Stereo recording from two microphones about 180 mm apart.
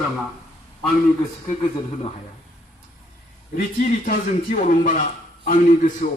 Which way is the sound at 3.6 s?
50° left (ahead or behind).